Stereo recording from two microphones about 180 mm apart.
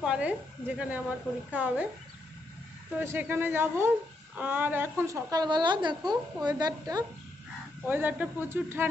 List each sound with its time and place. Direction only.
0.0 s a woman's voice: 5° right (ahead or behind)
3.0 s a woman's voice: 10° right (ahead or behind)
7.8 s a woman's voice: 10° right (ahead or behind)